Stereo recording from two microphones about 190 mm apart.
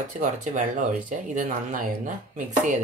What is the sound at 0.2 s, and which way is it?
Speech, 45° right (ahead or behind).